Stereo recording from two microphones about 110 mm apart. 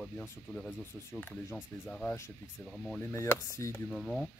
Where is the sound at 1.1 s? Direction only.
15° left (ahead or behind).